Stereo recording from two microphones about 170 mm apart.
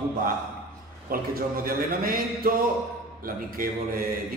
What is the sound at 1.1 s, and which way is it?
A man's voice, 60° right (ahead or behind).